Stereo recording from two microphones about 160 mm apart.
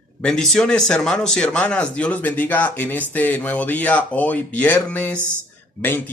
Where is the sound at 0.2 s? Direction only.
5° left (ahead or behind).